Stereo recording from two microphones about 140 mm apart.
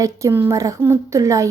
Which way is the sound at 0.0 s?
20° right (ahead or behind).